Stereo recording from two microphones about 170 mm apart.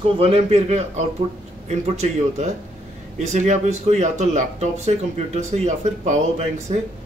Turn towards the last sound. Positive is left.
turn(degrees=-40)  # may be behind; listen again after turning